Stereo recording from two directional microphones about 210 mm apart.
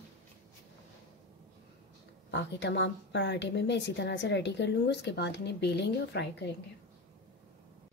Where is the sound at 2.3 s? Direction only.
55° left (ahead or behind).